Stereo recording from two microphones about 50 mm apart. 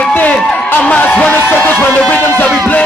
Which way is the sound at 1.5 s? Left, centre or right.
Left.